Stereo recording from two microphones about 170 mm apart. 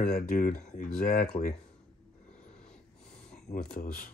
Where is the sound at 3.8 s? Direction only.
50° left (ahead or behind).